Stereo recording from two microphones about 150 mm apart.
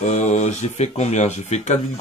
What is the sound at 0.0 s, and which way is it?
Speech, 50° left (ahead or behind).